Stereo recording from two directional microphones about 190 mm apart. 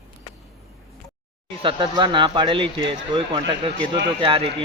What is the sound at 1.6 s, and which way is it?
Speech, 25° right (ahead or behind).